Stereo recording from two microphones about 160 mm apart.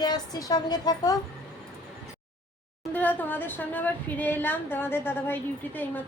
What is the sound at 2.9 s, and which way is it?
A woman's voice, 10° left (ahead or behind).